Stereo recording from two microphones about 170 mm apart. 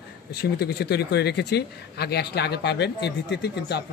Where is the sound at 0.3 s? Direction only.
75° left (ahead or behind).